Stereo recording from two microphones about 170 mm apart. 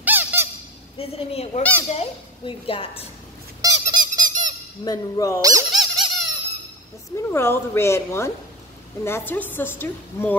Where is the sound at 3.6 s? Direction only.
25° right (ahead or behind).